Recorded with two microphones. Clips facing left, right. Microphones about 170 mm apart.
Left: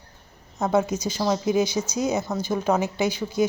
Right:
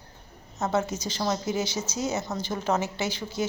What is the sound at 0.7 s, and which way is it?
A woman's voice, 10° left (ahead or behind).